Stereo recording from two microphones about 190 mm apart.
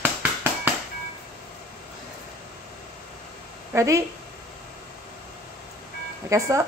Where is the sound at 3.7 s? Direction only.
15° right (ahead or behind).